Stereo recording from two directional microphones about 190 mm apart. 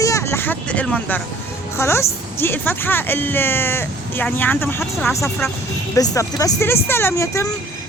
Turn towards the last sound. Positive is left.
turn(degrees=15)  # may be behind; listen again after turning